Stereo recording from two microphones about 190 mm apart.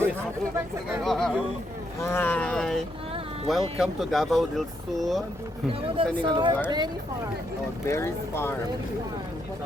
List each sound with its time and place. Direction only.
1.0 s speech: centre (ahead or behind)
2.0 s speech: 15° left (ahead or behind)
6.0 s speech: 30° right (ahead or behind)
7.9 s speech: 15° left (ahead or behind)